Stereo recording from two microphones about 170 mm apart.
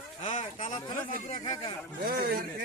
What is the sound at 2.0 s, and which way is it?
Speech, 60° right (ahead or behind).